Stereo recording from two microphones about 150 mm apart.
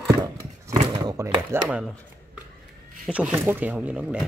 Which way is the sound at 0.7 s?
20° right (ahead or behind).